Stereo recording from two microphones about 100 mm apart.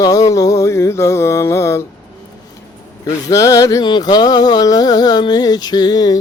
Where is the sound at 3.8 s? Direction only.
45° left (ahead or behind).